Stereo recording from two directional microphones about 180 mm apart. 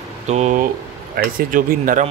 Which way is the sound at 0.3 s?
40° right (ahead or behind).